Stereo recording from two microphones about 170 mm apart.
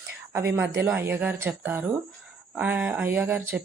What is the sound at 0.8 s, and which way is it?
Speech, 15° right (ahead or behind).